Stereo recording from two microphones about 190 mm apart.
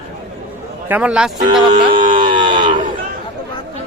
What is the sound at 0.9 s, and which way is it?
Speech, 5° right (ahead or behind).